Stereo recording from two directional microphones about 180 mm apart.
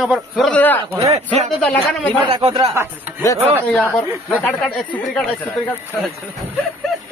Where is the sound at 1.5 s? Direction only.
Centre (ahead or behind).